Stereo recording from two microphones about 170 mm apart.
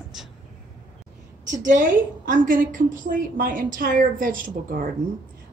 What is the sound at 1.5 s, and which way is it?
A woman's voice, 50° right (ahead or behind).